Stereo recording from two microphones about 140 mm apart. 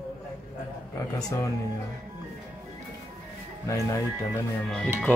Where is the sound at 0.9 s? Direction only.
25° left (ahead or behind).